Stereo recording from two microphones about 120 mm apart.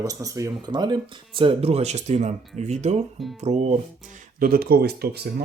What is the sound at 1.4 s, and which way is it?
Speech, 50° right (ahead or behind).